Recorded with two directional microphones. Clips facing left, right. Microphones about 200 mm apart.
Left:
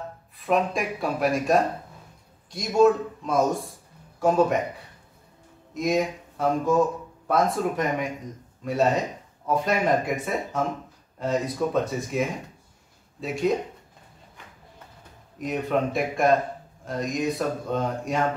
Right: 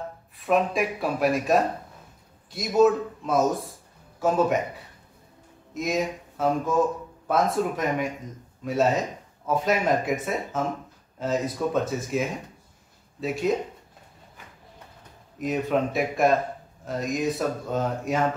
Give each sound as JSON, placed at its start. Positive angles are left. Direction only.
{"t": 0.5, "sound": "speech", "side_deg": 0}
{"t": 5.8, "sound": "speech", "side_deg": 0}
{"t": 15.4, "sound": "speech", "side_deg": 0}